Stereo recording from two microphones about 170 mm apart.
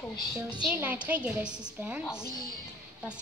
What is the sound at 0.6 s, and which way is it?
A woman's voice, 10° right (ahead or behind).